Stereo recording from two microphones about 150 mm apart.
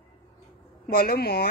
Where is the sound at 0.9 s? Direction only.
90° left.